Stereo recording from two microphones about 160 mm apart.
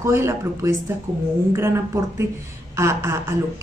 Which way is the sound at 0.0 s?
20° right (ahead or behind).